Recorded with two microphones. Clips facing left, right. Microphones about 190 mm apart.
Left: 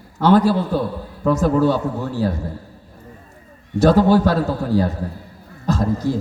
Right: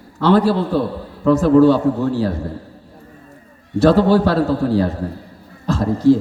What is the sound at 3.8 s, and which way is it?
A man's voice, 45° left (ahead or behind).